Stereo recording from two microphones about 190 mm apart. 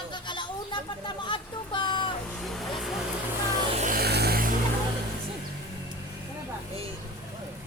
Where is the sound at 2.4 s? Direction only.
Centre (ahead or behind).